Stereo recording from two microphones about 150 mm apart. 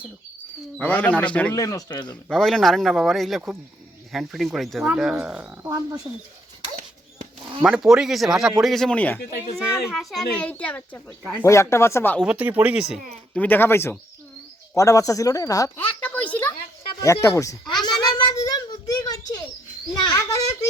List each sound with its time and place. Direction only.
0.8 s speech: 10° left (ahead or behind)
1.5 s speech: 25° left (ahead or behind)
2.3 s speech: 5° left (ahead or behind)
5.6 s speech: 20° right (ahead or behind)
7.6 s speech: 5° right (ahead or behind); by 12.2 s 15° left (ahead or behind)
12.2 s speech: 10° right (ahead or behind)
13.1 s speech: 5° left (ahead or behind)
15.8 s a sound: 10° left (ahead or behind)
17.0 s speech: 20° left (ahead or behind)
17.8 s a sound: 30° left (ahead or behind)
19.9 s a child's voice: 25° left (ahead or behind)